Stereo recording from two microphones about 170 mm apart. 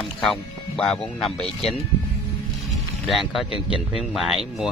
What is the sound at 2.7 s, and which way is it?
Music, centre (ahead or behind).